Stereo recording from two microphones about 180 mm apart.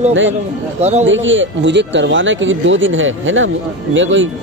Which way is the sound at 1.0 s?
90° right.